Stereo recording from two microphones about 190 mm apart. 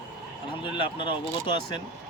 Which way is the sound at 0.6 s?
25° left (ahead or behind).